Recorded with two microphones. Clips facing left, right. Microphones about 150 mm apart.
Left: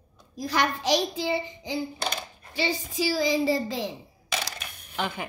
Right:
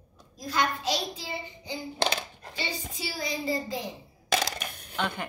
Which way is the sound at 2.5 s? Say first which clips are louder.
Left 8 dB; 90° left.